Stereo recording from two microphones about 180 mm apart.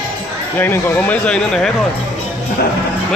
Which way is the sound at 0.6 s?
10° left (ahead or behind).